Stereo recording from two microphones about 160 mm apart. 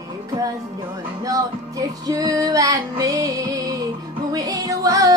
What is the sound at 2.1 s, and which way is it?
Music, 20° right (ahead or behind).